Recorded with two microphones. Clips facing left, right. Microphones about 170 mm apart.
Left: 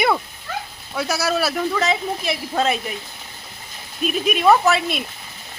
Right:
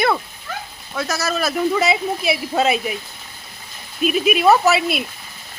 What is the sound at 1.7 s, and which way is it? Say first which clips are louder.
Speech: right 3 dB; 10° right (ahead or behind).